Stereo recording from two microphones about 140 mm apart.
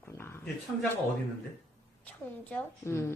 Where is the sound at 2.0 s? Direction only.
10° left (ahead or behind).